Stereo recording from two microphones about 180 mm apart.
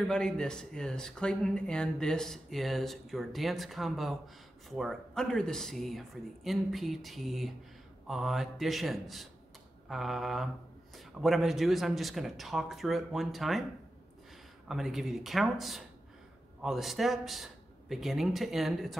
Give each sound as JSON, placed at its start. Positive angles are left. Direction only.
{"t": 0.1, "sound": "speech", "side_deg": 5}
{"t": 14.7, "sound": "speech", "side_deg": 0}